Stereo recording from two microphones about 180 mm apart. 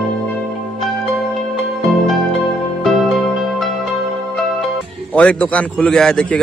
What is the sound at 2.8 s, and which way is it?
Music, centre (ahead or behind).